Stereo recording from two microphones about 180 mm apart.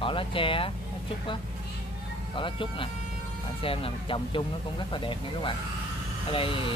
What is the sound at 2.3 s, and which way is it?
Speech, 30° left (ahead or behind).